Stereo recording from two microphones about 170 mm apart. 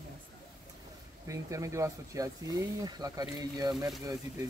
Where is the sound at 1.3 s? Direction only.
20° right (ahead or behind).